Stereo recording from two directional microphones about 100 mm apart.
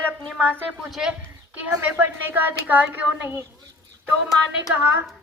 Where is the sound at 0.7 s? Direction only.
5° right (ahead or behind).